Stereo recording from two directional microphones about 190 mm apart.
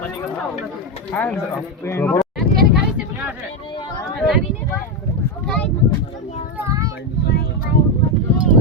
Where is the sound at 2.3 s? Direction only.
Centre (ahead or behind).